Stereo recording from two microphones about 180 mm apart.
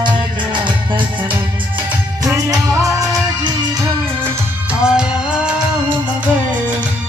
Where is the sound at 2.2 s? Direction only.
15° right (ahead or behind).